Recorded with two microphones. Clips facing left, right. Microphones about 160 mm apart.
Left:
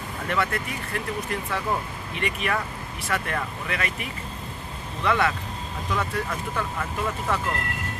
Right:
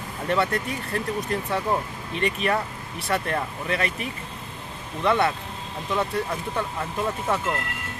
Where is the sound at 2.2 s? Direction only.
35° right (ahead or behind).